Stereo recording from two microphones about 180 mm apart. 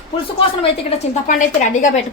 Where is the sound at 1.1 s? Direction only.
45° left (ahead or behind).